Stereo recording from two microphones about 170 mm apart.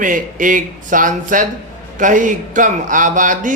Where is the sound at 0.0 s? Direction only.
50° right (ahead or behind).